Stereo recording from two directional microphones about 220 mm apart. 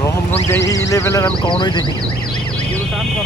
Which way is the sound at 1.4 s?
20° left (ahead or behind).